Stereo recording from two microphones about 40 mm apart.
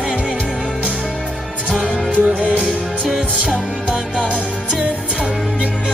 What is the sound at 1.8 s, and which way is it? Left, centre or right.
Music, right.